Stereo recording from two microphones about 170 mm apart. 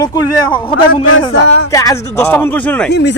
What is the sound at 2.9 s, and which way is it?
Speech, 90° left.